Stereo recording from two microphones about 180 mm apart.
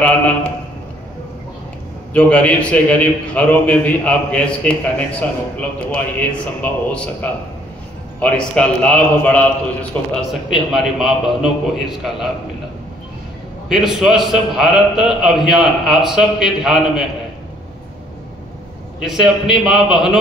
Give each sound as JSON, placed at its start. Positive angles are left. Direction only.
{"t": 0.0, "sound": "a man's voice", "side_deg": 5}
{"t": 2.1, "sound": "a man's voice", "side_deg": 5}
{"t": 10.5, "sound": "a man's voice", "side_deg": 0}
{"t": 13.7, "sound": "a man's voice", "side_deg": 0}
{"t": 18.9, "sound": "a man's voice", "side_deg": -5}